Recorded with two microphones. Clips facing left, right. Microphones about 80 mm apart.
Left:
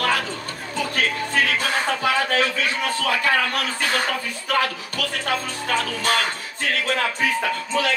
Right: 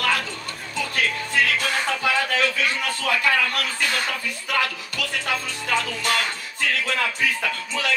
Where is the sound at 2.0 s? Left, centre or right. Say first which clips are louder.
Left 1 dB; left.